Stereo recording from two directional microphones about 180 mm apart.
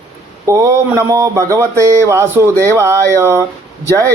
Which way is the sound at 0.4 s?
15° right (ahead or behind).